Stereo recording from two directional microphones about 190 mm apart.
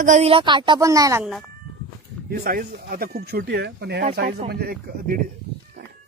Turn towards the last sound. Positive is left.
turn(degrees=-45)  # may be behind; listen again after turning